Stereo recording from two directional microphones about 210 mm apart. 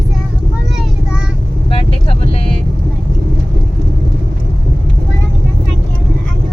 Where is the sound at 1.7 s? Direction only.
25° left (ahead or behind).